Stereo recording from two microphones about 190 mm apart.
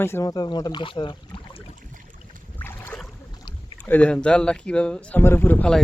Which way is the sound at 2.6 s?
10° left (ahead or behind).